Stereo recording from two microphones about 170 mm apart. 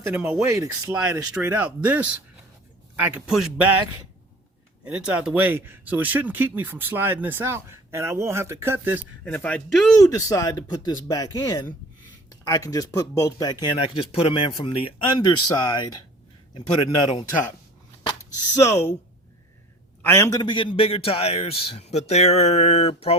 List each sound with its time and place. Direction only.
0.1 s speech: 5° right (ahead or behind)
0.4 s speech: 20° right (ahead or behind); by 3.5 s 5° right (ahead or behind)
4.9 s speech: 5° right (ahead or behind)
9.2 s speech: 5° left (ahead or behind)
10.0 s a man's voice: 20° left (ahead or behind)
18.5 s speech: 15° left (ahead or behind)
20.0 s a man's voice: 15° left (ahead or behind); by 23.1 s 35° left (ahead or behind)